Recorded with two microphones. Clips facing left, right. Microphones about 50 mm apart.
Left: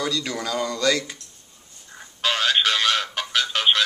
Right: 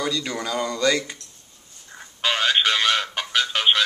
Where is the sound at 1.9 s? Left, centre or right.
Centre.